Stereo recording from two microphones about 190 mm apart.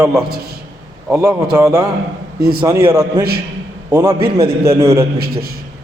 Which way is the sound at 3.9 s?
20° right (ahead or behind).